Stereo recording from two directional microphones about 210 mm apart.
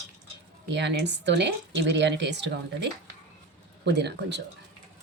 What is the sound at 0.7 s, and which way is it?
Speech, 55° right (ahead or behind).